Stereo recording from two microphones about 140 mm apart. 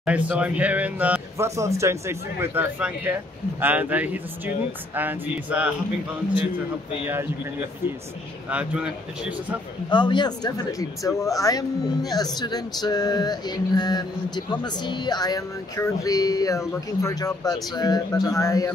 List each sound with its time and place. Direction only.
0.0 s speech: 10° right (ahead or behind)
8.5 s speech: 10° right (ahead or behind)
9.8 s speech: 35° left (ahead or behind)